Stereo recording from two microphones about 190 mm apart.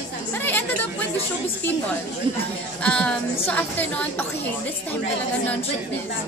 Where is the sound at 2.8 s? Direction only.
5° left (ahead or behind).